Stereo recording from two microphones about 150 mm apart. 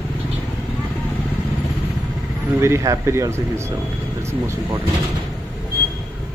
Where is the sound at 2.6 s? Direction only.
20° right (ahead or behind).